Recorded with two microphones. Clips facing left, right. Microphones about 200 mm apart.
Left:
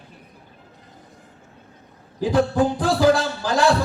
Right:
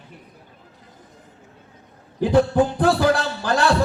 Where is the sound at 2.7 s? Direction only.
60° right (ahead or behind).